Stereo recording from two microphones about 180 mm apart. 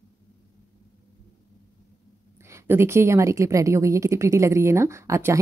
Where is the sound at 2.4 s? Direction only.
15° right (ahead or behind).